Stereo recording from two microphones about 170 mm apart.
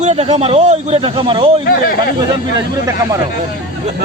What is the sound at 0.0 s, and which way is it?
Speech, 40° right (ahead or behind).